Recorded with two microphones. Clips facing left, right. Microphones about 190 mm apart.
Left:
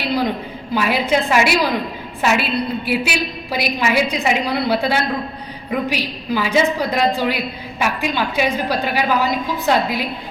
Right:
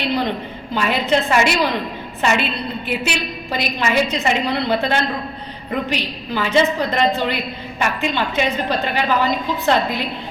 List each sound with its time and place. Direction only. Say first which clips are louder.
0.1 s a woman's voice: left 1 dB; 10° left (ahead or behind)